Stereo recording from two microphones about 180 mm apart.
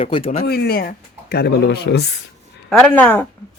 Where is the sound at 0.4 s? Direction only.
60° left (ahead or behind).